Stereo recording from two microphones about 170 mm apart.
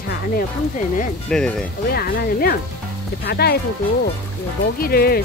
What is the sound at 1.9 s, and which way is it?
Speech, 65° left (ahead or behind).